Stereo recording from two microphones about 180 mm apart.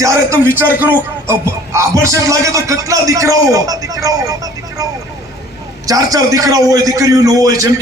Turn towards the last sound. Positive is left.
turn(degrees=-20)  # may be behind; listen again after turning